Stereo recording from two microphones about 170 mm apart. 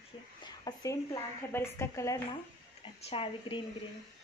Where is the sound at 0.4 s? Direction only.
25° left (ahead or behind).